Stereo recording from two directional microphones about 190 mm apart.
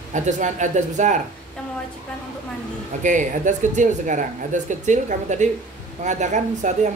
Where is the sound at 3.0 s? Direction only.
40° right (ahead or behind).